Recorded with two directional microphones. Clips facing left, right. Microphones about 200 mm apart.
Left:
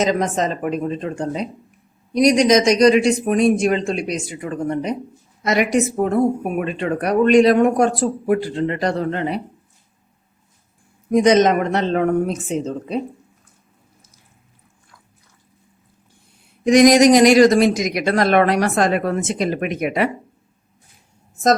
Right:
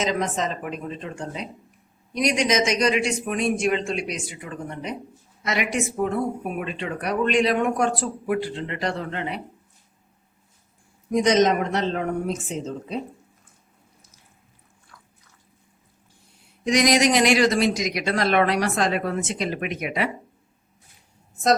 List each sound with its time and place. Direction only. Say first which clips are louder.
0.0 s speech: left 6 dB; 45° left (ahead or behind)
11.1 s speech: left 5 dB; 60° left (ahead or behind)
16.6 s speech: left 9 dB; 50° left (ahead or behind)